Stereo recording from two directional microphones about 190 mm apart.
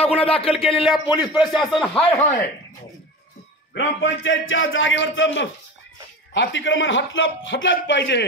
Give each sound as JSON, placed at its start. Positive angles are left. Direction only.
{"t": 0.0, "sound": "speech", "side_deg": 30}
{"t": 0.8, "sound": "speech", "side_deg": -5}
{"t": 3.7, "sound": "a man's voice", "side_deg": 70}